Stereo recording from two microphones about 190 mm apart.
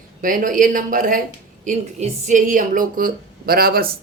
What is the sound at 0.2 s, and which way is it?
Speech, 45° right (ahead or behind).